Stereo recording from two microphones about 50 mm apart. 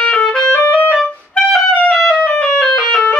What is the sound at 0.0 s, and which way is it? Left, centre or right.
Music, centre.